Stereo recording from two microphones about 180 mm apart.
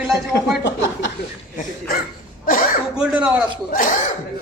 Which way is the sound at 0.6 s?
90° left.